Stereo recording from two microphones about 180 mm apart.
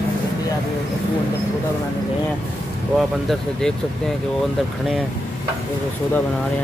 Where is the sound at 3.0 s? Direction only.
Centre (ahead or behind).